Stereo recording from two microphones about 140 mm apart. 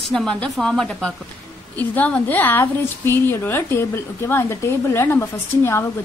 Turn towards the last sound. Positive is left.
turn(degrees=20)  # may be behind; listen again after turning